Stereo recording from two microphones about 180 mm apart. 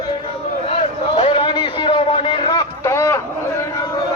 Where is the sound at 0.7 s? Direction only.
35° left (ahead or behind); by 3.2 s 15° left (ahead or behind).